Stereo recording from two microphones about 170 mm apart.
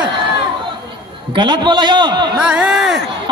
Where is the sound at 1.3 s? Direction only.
25° right (ahead or behind).